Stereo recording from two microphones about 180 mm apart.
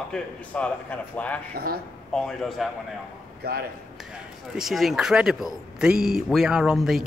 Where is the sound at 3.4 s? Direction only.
60° right (ahead or behind).